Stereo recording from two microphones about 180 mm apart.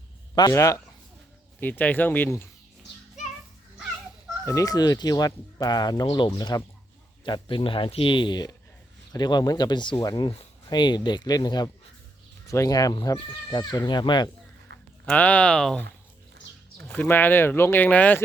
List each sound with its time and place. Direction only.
0.3 s speech: 20° left (ahead or behind)
4.4 s speech: 20° left (ahead or behind)
14.7 s a sound: 75° right (ahead or behind)
15.0 s speech: 5° left (ahead or behind)
16.9 s speech: 10° left (ahead or behind)